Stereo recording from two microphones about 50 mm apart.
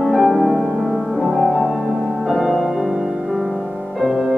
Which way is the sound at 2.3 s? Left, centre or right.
Centre.